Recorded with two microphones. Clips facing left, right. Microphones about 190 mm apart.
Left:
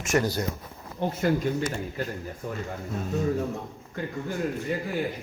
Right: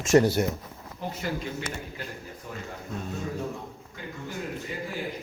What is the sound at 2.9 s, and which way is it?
Speech, centre (ahead or behind).